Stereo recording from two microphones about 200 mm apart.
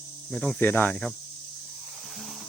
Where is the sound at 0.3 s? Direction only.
Centre (ahead or behind).